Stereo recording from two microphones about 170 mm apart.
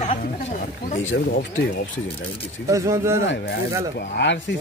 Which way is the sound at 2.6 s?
20° right (ahead or behind).